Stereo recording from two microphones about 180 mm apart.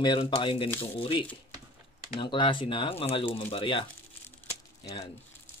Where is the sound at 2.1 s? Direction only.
25° left (ahead or behind).